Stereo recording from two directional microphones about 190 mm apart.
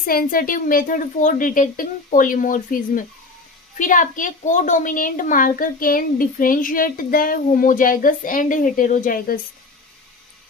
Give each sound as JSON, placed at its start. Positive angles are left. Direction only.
{"t": 0.0, "sound": "a woman's voice", "side_deg": 50}